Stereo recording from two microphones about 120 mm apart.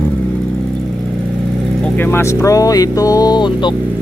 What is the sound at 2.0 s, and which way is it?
Speech, 20° left (ahead or behind).